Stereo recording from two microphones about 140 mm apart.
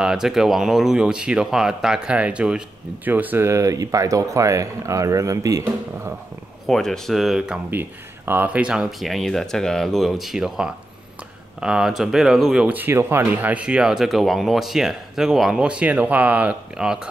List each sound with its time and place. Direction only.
0.0 s speech: 5° right (ahead or behind); by 6.1 s 20° right (ahead or behind)
6.6 s speech: 5° left (ahead or behind)